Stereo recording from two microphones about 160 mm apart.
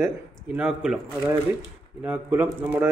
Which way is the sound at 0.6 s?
10° right (ahead or behind).